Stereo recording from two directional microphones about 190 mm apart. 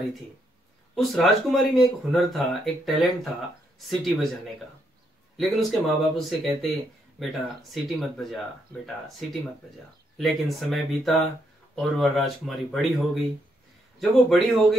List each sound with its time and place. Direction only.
0.9 s speech: centre (ahead or behind)
5.4 s speech: centre (ahead or behind)